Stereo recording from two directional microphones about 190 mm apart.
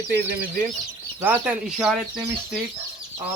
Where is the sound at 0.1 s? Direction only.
55° right (ahead or behind).